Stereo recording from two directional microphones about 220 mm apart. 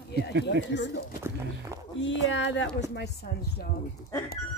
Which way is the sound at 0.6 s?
55° left (ahead or behind).